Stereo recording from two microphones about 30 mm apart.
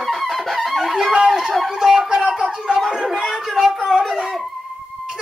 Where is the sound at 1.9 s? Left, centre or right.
Right.